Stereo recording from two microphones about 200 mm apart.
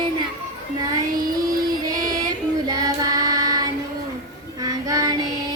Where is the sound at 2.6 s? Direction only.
20° right (ahead or behind).